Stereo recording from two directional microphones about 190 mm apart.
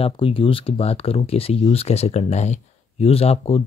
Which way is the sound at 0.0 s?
30° left (ahead or behind).